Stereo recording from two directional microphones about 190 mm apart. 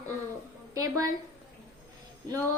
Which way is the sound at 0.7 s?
20° right (ahead or behind).